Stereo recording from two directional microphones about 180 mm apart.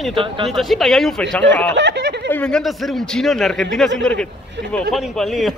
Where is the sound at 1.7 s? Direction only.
75° right (ahead or behind).